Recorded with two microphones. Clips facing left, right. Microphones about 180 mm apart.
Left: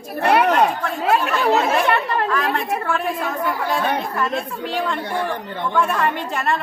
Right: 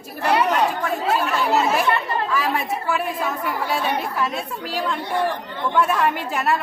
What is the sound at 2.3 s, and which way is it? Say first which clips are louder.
Speech: left 1 dB; 5° right (ahead or behind).